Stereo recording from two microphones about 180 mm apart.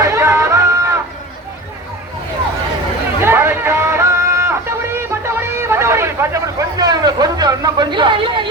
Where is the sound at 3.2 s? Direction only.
15° right (ahead or behind).